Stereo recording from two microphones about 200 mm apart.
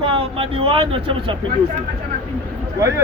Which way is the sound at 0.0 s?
25° right (ahead or behind).